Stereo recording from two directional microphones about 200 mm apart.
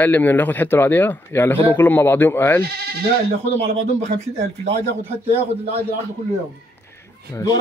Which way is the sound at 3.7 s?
35° right (ahead or behind).